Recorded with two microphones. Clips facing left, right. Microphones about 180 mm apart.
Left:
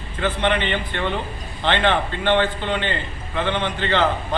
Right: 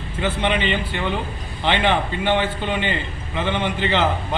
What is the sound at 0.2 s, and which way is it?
A man's voice, 15° right (ahead or behind).